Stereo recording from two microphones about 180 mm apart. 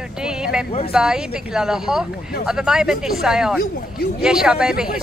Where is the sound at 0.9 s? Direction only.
5° right (ahead or behind).